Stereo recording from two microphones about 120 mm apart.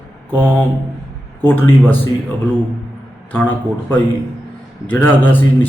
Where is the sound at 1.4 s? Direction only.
15° left (ahead or behind).